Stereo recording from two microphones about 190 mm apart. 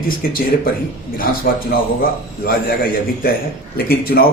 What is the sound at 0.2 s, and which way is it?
Speech, 50° left (ahead or behind).